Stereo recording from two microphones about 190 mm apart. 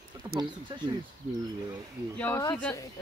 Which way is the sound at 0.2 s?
20° right (ahead or behind).